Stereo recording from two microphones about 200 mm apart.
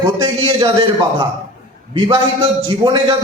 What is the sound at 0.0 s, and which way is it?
Speech, 25° right (ahead or behind).